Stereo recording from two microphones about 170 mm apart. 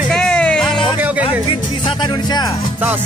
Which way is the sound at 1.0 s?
10° right (ahead or behind).